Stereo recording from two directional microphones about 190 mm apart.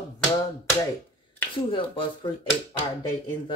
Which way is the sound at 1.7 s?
25° left (ahead or behind).